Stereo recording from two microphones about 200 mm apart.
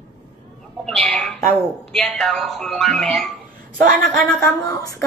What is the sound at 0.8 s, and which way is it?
Bird, centre (ahead or behind).